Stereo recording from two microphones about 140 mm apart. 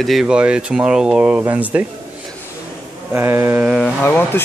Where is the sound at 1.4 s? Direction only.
10° right (ahead or behind).